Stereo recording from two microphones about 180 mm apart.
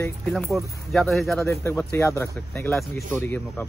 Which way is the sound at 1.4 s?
15° left (ahead or behind).